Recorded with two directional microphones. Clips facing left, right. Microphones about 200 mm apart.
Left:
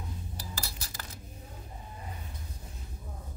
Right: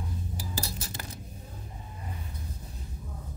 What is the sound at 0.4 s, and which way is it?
Cutlery, 20° right (ahead or behind).